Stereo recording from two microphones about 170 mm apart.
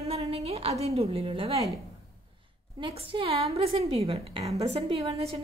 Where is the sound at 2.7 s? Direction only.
30° right (ahead or behind).